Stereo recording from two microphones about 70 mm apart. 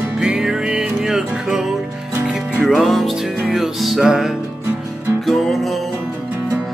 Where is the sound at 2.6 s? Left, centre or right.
Centre.